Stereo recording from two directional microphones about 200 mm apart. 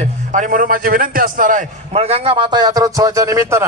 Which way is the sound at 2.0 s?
30° right (ahead or behind).